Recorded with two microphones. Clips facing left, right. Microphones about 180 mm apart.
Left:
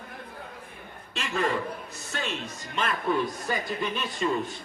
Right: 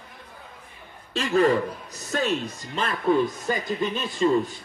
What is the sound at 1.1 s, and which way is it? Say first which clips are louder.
Speech: right 8 dB; 35° right (ahead or behind).